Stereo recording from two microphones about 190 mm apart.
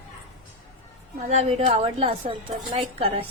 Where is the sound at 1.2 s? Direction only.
35° right (ahead or behind).